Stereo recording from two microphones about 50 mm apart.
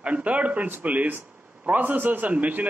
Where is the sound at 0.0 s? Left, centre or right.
Right.